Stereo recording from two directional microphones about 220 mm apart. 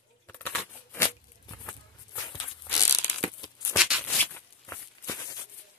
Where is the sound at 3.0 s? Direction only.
20° left (ahead or behind).